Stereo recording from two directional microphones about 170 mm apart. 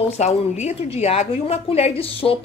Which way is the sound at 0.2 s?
40° left (ahead or behind).